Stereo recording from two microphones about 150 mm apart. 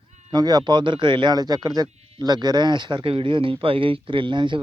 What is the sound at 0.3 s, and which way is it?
Speech, 25° right (ahead or behind).